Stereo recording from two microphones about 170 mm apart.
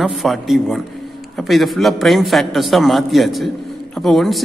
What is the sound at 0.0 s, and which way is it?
A man's voice, centre (ahead or behind).